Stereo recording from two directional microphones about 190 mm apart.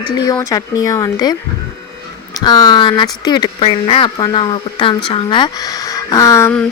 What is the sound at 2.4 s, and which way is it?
Speech, 20° left (ahead or behind).